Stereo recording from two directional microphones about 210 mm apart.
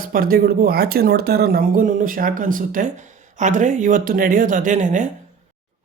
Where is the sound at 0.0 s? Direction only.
45° right (ahead or behind).